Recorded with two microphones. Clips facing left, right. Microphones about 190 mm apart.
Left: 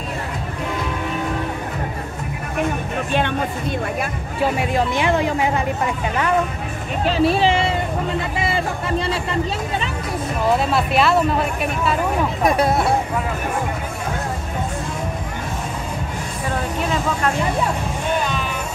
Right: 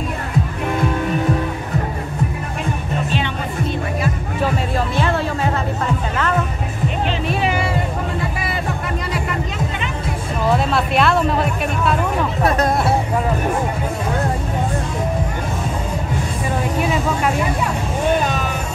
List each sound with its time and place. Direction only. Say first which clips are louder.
3.1 s music: left 5 dB; 55° left (ahead or behind)
4.7 s music: left 2 dB; 15° left (ahead or behind)
7.1 s music: left 8 dB; 35° left (ahead or behind)
8.9 s music: left 2 dB; 30° left (ahead or behind)
10.7 s speech: even; centre (ahead or behind)